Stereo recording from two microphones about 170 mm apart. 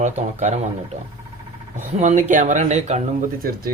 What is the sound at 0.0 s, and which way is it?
Speech, 45° right (ahead or behind).